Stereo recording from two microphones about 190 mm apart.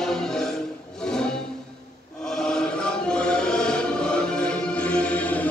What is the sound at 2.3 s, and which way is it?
Music, 5° left (ahead or behind).